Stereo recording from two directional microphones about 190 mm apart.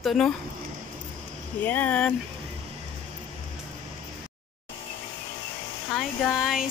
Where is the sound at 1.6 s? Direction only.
10° left (ahead or behind).